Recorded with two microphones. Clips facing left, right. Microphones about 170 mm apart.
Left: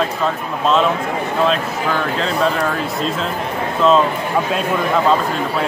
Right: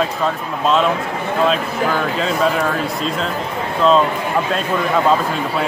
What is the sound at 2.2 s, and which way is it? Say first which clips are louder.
Speech: right 1 dB; 5° right (ahead or behind).